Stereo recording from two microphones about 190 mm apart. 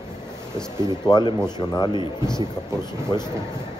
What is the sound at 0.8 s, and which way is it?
Speech, 20° left (ahead or behind).